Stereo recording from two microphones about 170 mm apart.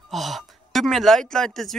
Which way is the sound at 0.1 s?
Centre (ahead or behind).